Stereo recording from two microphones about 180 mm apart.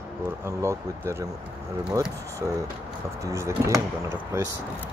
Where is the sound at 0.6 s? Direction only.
15° right (ahead or behind).